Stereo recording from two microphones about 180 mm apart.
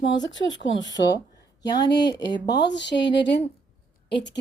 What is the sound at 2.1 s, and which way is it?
Speech, 70° left (ahead or behind).